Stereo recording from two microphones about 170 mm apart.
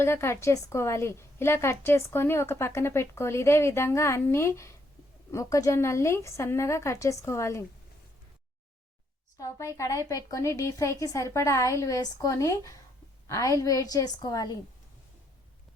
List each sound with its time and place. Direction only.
0.0 s a woman's voice: 15° left (ahead or behind)
9.4 s a woman's voice: 15° left (ahead or behind)